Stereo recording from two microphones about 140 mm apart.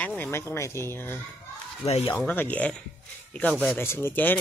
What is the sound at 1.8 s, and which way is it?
Speech, 50° left (ahead or behind).